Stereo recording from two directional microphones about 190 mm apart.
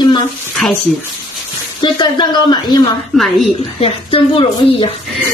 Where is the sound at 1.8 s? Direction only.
25° left (ahead or behind).